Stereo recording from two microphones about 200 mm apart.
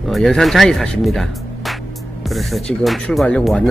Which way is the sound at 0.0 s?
Centre (ahead or behind).